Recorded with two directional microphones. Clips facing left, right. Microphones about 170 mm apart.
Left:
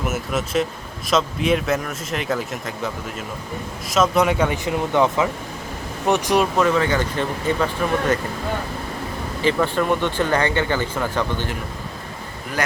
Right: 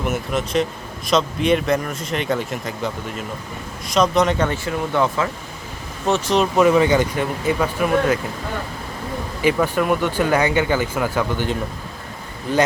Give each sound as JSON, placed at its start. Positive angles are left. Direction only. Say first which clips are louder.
{"t": 0.0, "sound": "speech", "louder": "right 1 dB", "side_deg": 5}
{"t": 6.6, "sound": "speech", "louder": "right 4 dB", "side_deg": -10}
{"t": 9.4, "sound": "speech", "louder": "right 1 dB", "side_deg": -10}
{"t": 12.6, "sound": "speech", "louder": "right 6 dB", "side_deg": -20}